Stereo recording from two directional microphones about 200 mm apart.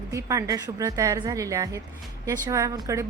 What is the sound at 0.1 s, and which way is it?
A woman's voice, 15° right (ahead or behind).